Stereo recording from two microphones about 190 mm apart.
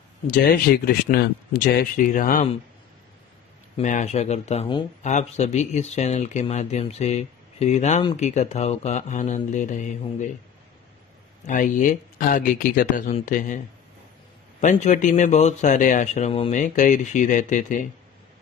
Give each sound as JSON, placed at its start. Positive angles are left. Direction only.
{"t": 0.3, "sound": "speech", "side_deg": 50}
{"t": 3.7, "sound": "speech", "side_deg": 40}
{"t": 11.4, "sound": "speech", "side_deg": 45}
{"t": 14.6, "sound": "speech", "side_deg": 40}